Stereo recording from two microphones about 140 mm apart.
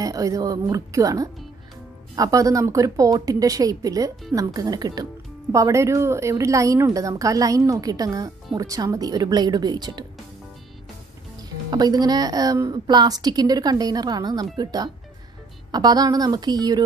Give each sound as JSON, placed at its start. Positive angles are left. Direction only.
{"t": 0.0, "sound": "a woman's voice", "side_deg": -25}
{"t": 11.7, "sound": "a woman's voice", "side_deg": -30}